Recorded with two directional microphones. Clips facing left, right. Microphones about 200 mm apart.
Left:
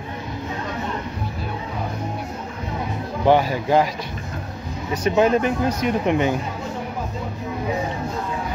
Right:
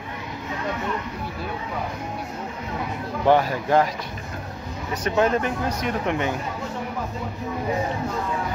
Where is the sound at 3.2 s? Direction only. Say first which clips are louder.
Left 2 dB; centre (ahead or behind).